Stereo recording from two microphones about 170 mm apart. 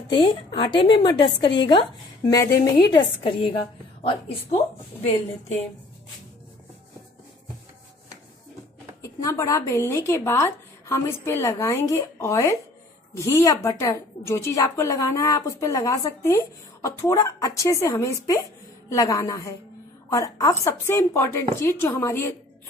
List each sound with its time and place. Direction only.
0.1 s a woman's voice: 30° left (ahead or behind)
9.0 s a woman's voice: 20° left (ahead or behind)